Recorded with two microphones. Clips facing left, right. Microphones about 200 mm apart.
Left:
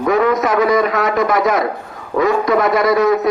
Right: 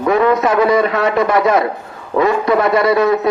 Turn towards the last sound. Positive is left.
turn(degrees=-30)  # may be behind; listen again after turning